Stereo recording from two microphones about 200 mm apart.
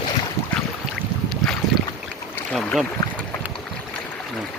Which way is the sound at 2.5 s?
5° left (ahead or behind).